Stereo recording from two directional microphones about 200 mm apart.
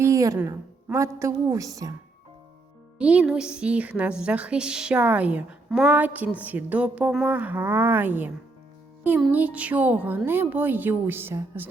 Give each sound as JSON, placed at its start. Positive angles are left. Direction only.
{"t": 0.0, "sound": "a woman's voice", "side_deg": -15}
{"t": 3.0, "sound": "a woman's voice", "side_deg": -5}